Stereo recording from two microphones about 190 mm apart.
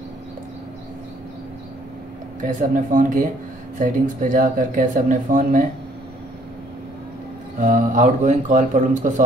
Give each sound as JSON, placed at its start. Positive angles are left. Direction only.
{"t": 2.4, "sound": "speech", "side_deg": -45}
{"t": 7.6, "sound": "speech", "side_deg": -45}